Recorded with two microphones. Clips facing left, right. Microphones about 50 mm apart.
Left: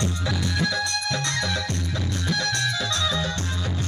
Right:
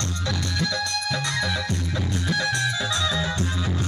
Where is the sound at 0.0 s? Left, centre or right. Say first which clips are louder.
Left 2 dB; centre.